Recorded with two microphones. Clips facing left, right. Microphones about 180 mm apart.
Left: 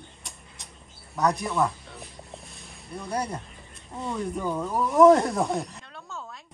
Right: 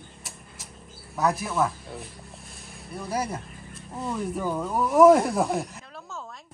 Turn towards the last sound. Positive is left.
turn(degrees=-5)  # may be behind; listen again after turning